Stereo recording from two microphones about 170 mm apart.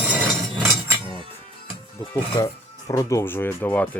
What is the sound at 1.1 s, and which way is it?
Music, 30° right (ahead or behind).